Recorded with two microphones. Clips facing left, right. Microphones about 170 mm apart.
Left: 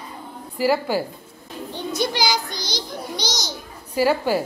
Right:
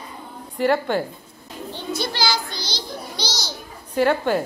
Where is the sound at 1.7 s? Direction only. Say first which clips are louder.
Left 3 dB; 15° left (ahead or behind).